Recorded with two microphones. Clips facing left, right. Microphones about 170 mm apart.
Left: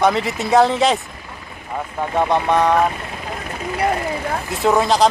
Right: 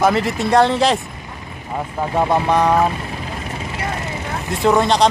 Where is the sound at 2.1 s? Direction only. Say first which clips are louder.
Even; 5° right (ahead or behind).